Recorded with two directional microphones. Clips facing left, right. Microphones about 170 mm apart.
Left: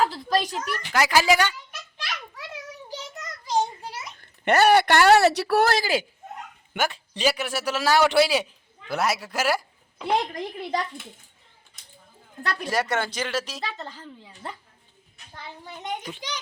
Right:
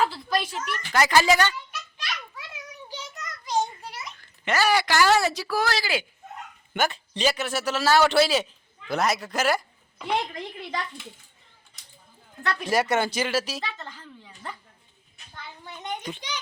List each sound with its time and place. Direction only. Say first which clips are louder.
0.0 s a sound: left 2 dB; 40° left (ahead or behind)
0.9 s a man's voice: even; 5° left (ahead or behind)
3.4 s a sound: left 2 dB; 30° left (ahead or behind)
4.2 s speech: left 6 dB; 60° left (ahead or behind); by 6.1 s 40° left (ahead or behind)
6.7 s a man's voice: right 1 dB; 10° left (ahead or behind)
10.0 s speech: left 3 dB; 35° left (ahead or behind)
12.6 s speech: right 3 dB; 10° right (ahead or behind)
13.6 s speech: left 2 dB; 35° left (ahead or behind)
15.8 s a child's voice: even; 5° left (ahead or behind)